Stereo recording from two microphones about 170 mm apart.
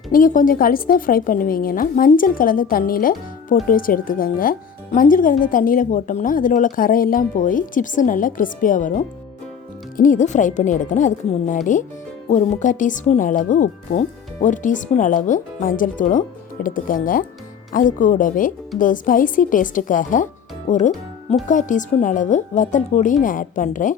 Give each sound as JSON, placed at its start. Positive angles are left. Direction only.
{"t": 0.1, "sound": "a woman's voice", "side_deg": 50}